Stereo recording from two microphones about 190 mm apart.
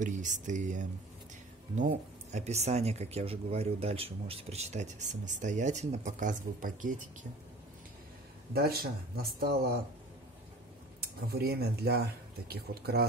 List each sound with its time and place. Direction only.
0.0 s speech: 40° right (ahead or behind)
8.5 s speech: 55° right (ahead or behind)
11.0 s speech: 55° right (ahead or behind)